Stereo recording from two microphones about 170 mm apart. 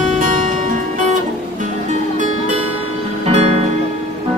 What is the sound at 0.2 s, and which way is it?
Music, 50° right (ahead or behind).